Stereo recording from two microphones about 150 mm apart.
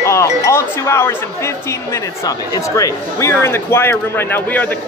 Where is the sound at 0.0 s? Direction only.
20° left (ahead or behind).